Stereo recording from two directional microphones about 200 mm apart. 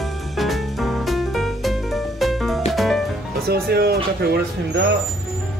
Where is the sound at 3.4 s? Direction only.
50° right (ahead or behind).